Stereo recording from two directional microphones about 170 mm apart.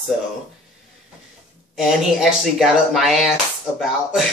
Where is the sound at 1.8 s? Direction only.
5° right (ahead or behind).